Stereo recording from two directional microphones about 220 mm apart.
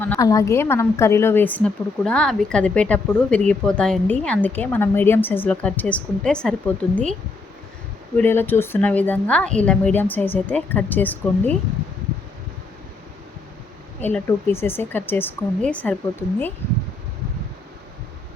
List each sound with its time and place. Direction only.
0.0 s a woman's voice: 15° left (ahead or behind)
8.2 s a woman's voice: 10° left (ahead or behind)
14.0 s a woman's voice: 10° left (ahead or behind)